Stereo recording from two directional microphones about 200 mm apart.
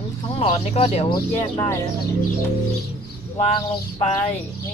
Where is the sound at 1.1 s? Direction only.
15° left (ahead or behind).